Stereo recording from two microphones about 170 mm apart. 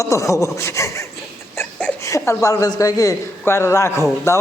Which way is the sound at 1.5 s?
10° left (ahead or behind).